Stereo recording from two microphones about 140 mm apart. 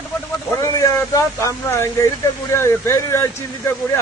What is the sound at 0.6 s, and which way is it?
Speech, 25° left (ahead or behind).